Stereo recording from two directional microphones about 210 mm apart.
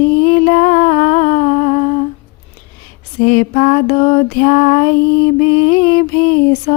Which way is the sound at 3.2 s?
35° left (ahead or behind).